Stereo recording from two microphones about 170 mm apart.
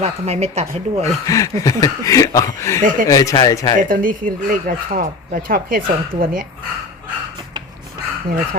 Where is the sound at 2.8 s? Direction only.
50° right (ahead or behind).